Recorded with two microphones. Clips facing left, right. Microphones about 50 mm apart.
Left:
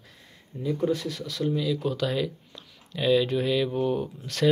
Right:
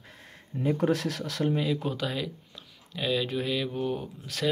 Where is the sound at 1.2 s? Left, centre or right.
Right.